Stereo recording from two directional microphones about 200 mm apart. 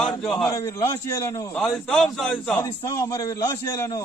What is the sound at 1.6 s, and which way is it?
A man's voice, centre (ahead or behind).